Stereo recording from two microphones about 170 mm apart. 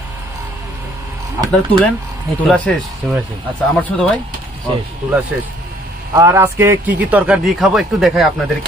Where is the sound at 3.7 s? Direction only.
10° left (ahead or behind).